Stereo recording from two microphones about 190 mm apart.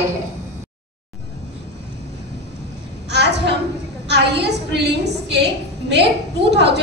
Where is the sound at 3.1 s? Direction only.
60° right (ahead or behind).